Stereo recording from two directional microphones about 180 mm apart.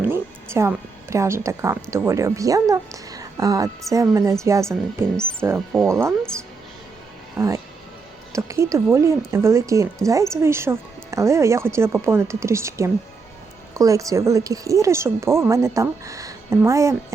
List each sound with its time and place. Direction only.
0.0 s a sound: 15° right (ahead or behind)
1.1 s a woman's voice: 15° right (ahead or behind)
5.1 s speech: 5° left (ahead or behind)
5.4 s a woman's voice: 15° right (ahead or behind)
7.3 s a woman's voice: 15° right (ahead or behind)